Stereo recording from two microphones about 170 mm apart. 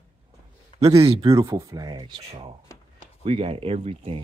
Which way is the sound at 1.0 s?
35° right (ahead or behind).